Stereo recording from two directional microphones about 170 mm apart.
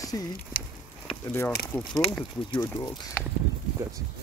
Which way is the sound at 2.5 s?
25° left (ahead or behind).